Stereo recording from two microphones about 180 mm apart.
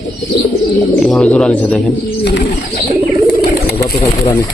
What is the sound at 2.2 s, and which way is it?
Bird, 65° left (ahead or behind).